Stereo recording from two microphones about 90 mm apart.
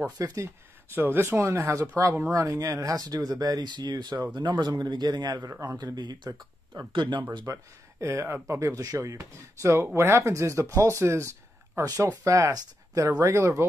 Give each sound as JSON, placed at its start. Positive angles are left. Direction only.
{"t": 0.2, "sound": "speech", "side_deg": -40}
{"t": 0.9, "sound": "speech", "side_deg": -25}
{"t": 7.4, "sound": "speech", "side_deg": -35}